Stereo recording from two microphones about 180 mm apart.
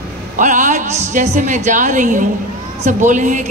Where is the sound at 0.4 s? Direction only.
45° right (ahead or behind).